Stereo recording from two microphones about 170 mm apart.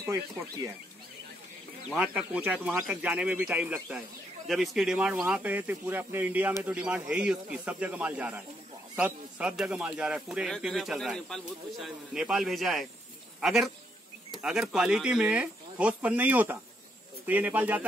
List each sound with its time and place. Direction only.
0.0 s speech: 20° right (ahead or behind)
2.0 s speech: 5° right (ahead or behind)